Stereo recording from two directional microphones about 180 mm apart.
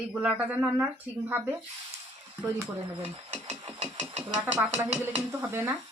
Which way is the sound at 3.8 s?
30° right (ahead or behind).